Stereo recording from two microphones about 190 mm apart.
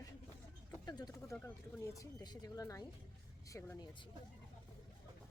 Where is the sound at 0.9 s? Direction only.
20° left (ahead or behind).